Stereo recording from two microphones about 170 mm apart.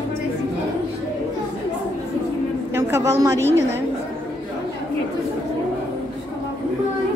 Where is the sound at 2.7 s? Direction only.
15° right (ahead or behind).